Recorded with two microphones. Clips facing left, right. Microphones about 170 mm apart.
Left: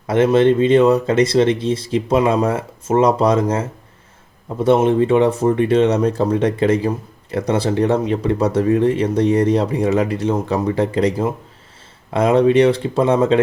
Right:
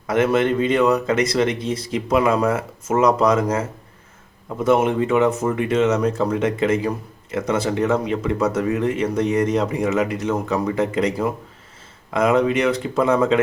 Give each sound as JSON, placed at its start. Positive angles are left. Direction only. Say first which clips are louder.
{"t": 0.1, "sound": "speech", "louder": "left 5 dB", "side_deg": 30}